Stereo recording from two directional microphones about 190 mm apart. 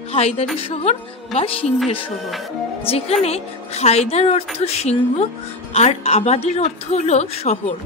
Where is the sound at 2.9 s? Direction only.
35° left (ahead or behind).